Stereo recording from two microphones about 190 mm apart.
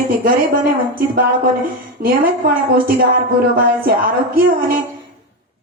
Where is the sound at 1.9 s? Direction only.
50° right (ahead or behind).